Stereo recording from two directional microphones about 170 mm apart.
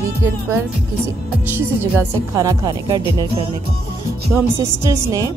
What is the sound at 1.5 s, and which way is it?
Speech, 15° right (ahead or behind).